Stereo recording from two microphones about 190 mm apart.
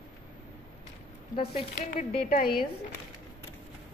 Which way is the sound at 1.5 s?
45° left (ahead or behind).